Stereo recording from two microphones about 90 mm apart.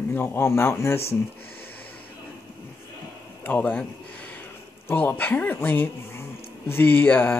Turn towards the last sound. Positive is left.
turn(degrees=20)  # may be behind; listen again after turning